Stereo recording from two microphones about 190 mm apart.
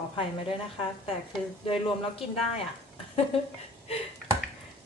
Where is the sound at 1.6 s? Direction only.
30° left (ahead or behind).